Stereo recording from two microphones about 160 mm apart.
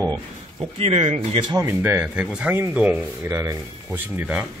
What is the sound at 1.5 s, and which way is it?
Speech, 15° right (ahead or behind).